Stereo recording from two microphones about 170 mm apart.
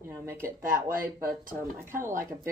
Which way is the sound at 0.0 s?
15° right (ahead or behind).